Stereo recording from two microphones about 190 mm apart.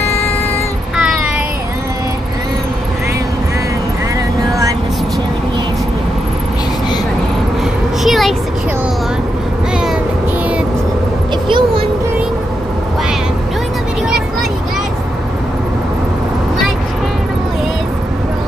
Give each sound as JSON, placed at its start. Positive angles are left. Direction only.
{"t": 0.0, "sound": "vehicle", "side_deg": 15}
{"t": 8.0, "sound": "vehicle", "side_deg": 0}
{"t": 11.4, "sound": "vehicle", "side_deg": -25}